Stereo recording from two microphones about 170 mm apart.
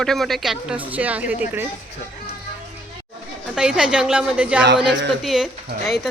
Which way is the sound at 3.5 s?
5° right (ahead or behind).